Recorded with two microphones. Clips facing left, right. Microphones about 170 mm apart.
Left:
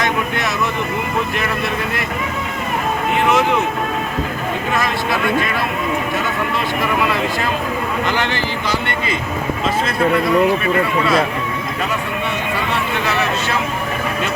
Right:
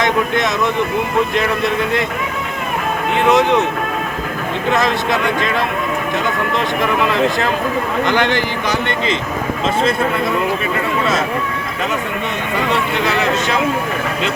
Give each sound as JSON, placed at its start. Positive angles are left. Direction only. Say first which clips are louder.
{"t": 0.0, "sound": "speech", "louder": "right 4 dB", "side_deg": -20}
{"t": 3.2, "sound": "speech", "louder": "right 4 dB", "side_deg": -20}
{"t": 8.0, "sound": "speech", "louder": "right 5 dB", "side_deg": -15}